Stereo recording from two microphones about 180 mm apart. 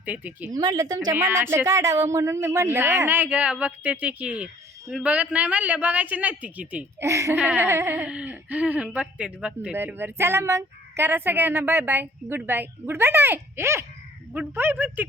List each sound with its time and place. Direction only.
0.0 s speech: 10° right (ahead or behind)
0.5 s a woman's voice: 20° right (ahead or behind)